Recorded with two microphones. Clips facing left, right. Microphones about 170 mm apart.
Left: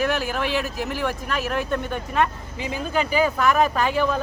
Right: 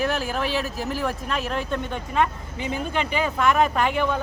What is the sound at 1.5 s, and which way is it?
Speech, 20° right (ahead or behind).